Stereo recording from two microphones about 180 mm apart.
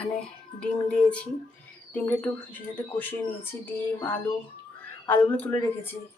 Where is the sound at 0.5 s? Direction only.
5° left (ahead or behind).